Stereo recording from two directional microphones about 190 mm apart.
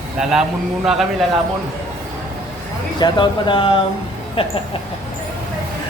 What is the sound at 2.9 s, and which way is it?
Speech, 25° left (ahead or behind).